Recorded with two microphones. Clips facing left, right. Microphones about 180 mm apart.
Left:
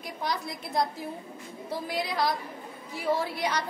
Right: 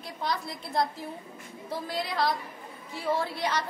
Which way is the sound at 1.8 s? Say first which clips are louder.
Even; 15° left (ahead or behind).